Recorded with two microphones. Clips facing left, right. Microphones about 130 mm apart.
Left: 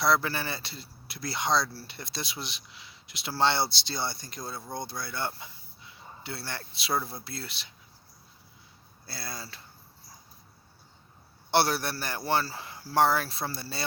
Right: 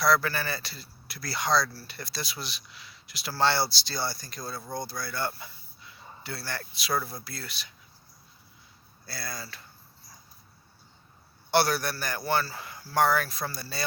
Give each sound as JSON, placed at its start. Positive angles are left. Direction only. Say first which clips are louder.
{"t": 0.0, "sound": "a man's voice", "louder": "right 1 dB", "side_deg": 25}
{"t": 9.0, "sound": "a man's voice", "louder": "right 1 dB", "side_deg": 25}
{"t": 11.5, "sound": "a man's voice", "louder": "right 1 dB", "side_deg": 25}